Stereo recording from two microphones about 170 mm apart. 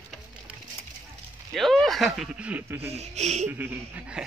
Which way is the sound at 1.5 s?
Centre (ahead or behind).